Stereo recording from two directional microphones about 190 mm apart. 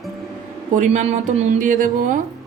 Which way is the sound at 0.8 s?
40° right (ahead or behind).